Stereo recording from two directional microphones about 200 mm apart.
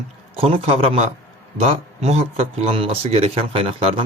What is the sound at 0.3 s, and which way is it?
Speech, 30° right (ahead or behind).